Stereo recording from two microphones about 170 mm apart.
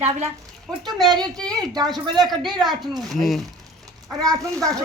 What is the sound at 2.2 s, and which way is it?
Speech, centre (ahead or behind).